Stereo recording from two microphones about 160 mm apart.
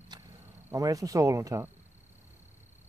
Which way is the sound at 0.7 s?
20° right (ahead or behind).